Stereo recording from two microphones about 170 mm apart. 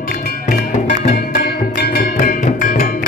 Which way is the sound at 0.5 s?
50° left (ahead or behind).